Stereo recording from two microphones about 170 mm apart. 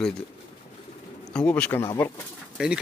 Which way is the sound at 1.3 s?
10° left (ahead or behind).